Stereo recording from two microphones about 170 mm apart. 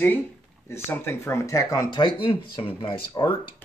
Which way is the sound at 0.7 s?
15° left (ahead or behind).